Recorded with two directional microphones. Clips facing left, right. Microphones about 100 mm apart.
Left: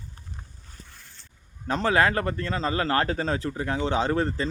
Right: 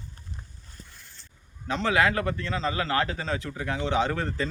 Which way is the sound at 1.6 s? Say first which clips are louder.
Left 2 dB; 40° left (ahead or behind).